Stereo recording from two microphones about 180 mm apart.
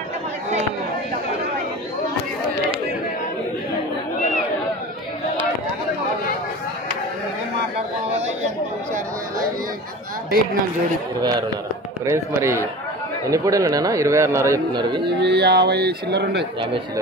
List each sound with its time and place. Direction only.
12.0 s a man's voice: 15° right (ahead or behind)
15.0 s speech: 65° right (ahead or behind)